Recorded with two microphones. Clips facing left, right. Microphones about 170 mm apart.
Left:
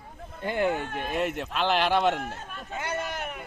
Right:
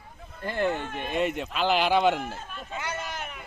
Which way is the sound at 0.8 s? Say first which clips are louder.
Left 1 dB; 50° left (ahead or behind).